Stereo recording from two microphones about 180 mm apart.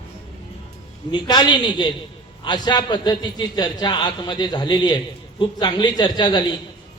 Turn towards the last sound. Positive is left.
turn(degrees=25)  # may be behind; listen again after turning